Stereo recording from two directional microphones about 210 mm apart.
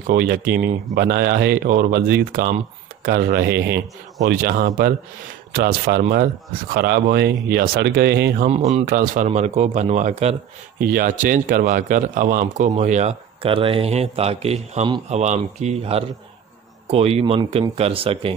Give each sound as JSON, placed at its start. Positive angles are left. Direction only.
{"t": 0.0, "sound": "speech", "side_deg": -45}
{"t": 8.5, "sound": "speech", "side_deg": -30}